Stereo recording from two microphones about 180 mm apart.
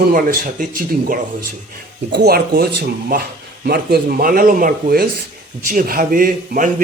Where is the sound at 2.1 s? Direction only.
60° right (ahead or behind).